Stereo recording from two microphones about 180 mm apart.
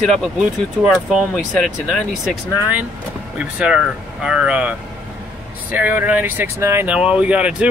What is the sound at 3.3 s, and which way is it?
Speech, 5° right (ahead or behind).